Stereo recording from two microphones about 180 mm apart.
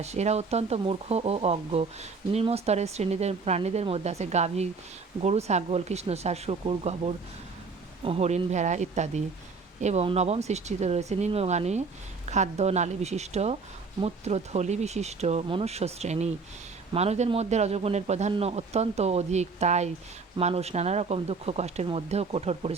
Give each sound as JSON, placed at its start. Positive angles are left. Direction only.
{"t": 0.0, "sound": "speech", "side_deg": -35}